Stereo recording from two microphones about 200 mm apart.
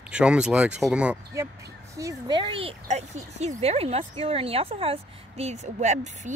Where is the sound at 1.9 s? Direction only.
15° right (ahead or behind).